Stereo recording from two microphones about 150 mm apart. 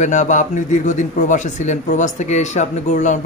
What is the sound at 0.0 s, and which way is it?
Speech, 55° left (ahead or behind).